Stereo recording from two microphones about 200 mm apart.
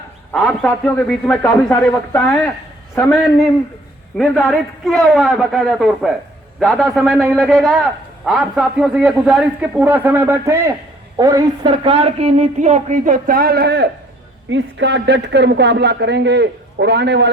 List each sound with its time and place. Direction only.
0.3 s a man's voice: 5° left (ahead or behind)
4.2 s a man's voice: 5° left (ahead or behind); by 17.2 s 55° right (ahead or behind)